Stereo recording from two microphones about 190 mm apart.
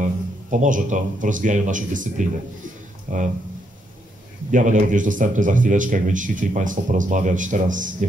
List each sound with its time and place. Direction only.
0.0 s speech: 40° right (ahead or behind)
4.5 s speech: 40° right (ahead or behind)